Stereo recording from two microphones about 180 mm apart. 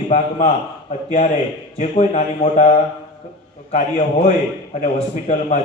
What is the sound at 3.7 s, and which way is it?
A man's voice, 40° left (ahead or behind).